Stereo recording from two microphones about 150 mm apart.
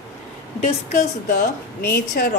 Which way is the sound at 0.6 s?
60° left (ahead or behind).